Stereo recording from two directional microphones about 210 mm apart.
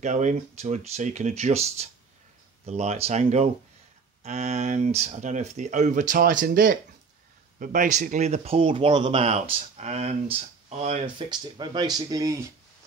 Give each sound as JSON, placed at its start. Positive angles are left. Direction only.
{"t": 0.0, "sound": "speech", "side_deg": -35}